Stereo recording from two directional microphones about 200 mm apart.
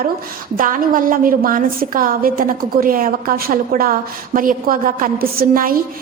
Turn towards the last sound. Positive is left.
turn(degrees=-45)  # may be behind; listen again after turning